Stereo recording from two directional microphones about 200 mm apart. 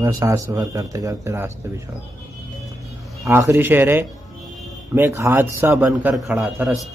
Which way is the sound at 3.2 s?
15° right (ahead or behind).